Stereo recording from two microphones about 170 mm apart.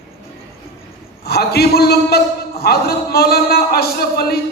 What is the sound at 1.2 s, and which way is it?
A man's voice, 70° left (ahead or behind).